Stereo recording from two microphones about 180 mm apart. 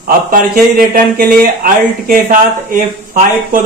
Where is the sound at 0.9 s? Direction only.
55° right (ahead or behind).